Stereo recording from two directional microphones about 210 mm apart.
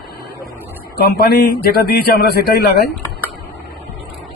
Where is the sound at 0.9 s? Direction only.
50° left (ahead or behind).